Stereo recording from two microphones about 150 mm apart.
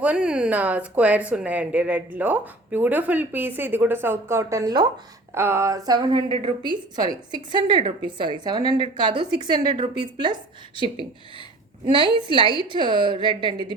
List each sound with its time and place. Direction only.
0.0 s speech: 5° right (ahead or behind); by 4.9 s 25° right (ahead or behind)
5.3 s a woman's voice: 15° right (ahead or behind); by 13.7 s 30° right (ahead or behind)